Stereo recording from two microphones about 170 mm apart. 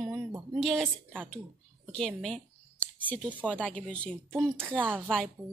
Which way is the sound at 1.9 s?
5° left (ahead or behind).